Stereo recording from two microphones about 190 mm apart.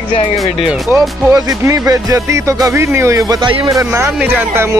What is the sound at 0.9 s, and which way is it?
Speech, 15° right (ahead or behind).